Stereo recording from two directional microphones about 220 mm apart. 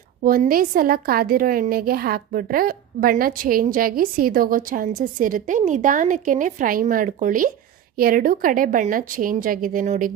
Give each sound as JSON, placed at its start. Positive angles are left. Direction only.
{"t": 0.2, "sound": "a woman's voice", "side_deg": -40}